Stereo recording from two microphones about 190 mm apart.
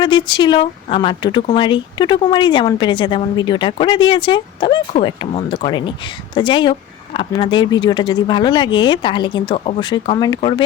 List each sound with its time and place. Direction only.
0.0 s speech: 25° left (ahead or behind)